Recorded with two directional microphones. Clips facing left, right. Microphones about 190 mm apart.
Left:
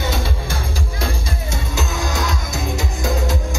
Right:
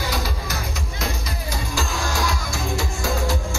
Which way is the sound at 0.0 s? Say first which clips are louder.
Left 3 dB; 25° left (ahead or behind).